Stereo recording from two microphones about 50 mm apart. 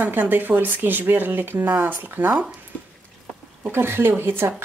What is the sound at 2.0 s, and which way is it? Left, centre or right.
Speech, right.